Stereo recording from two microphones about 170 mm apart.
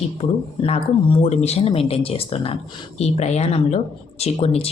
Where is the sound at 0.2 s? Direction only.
35° left (ahead or behind).